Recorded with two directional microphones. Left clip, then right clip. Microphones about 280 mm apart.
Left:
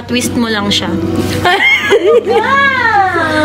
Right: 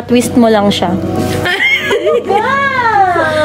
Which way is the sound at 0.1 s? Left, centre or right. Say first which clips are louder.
Right 5 dB; right.